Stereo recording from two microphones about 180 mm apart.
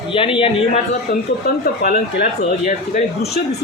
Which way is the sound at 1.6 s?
50° left (ahead or behind).